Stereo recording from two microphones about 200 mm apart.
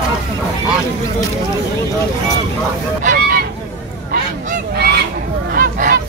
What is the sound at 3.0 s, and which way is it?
Goose, 45° right (ahead or behind).